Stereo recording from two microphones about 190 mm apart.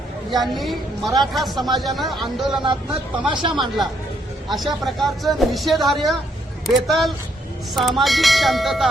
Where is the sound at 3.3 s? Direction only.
25° right (ahead or behind).